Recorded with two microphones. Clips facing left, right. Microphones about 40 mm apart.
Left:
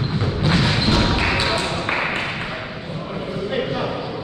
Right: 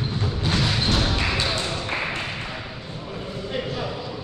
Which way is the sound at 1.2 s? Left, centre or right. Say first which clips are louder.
Left 5 dB; left.